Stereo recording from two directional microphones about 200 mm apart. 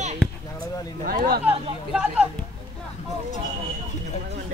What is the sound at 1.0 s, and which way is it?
Speech, 45° right (ahead or behind).